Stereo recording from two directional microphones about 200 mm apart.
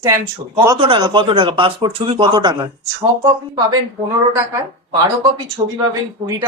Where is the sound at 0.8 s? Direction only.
25° right (ahead or behind).